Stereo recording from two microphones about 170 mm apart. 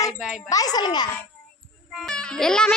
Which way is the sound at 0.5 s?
20° left (ahead or behind).